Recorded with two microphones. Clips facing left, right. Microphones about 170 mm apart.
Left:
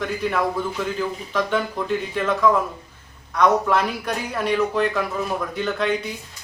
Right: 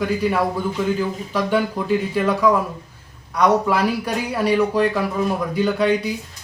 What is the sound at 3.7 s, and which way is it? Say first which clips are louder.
Speech: right 2 dB; 10° right (ahead or behind).